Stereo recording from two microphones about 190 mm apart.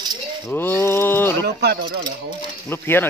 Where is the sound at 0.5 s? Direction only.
10° left (ahead or behind).